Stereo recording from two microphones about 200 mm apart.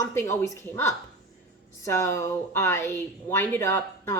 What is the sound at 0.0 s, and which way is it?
Speech, 15° left (ahead or behind).